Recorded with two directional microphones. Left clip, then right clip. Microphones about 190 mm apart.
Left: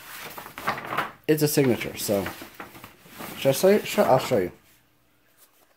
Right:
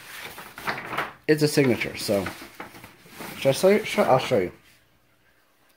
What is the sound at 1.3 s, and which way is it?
Speech, 10° left (ahead or behind).